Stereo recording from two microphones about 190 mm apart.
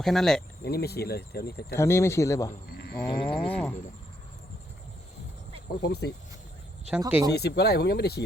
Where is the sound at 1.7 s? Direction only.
15° left (ahead or behind).